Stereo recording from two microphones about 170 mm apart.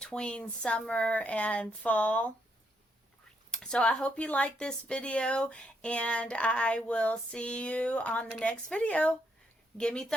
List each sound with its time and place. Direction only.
0.0 s speech: 5° left (ahead or behind)
3.5 s speech: 5° left (ahead or behind)